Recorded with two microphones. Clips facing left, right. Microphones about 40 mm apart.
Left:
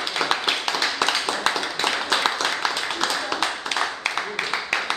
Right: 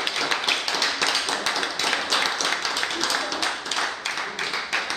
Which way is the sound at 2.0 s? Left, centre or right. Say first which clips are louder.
Left 2 dB; left.